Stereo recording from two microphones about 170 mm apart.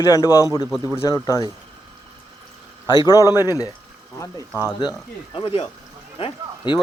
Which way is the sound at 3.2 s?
15° right (ahead or behind).